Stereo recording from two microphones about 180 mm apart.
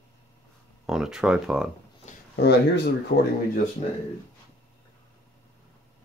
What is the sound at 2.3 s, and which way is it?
Speech, 65° left (ahead or behind).